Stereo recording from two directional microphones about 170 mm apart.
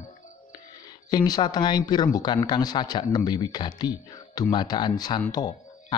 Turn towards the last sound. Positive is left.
turn(degrees=25)  # may be behind; listen again after turning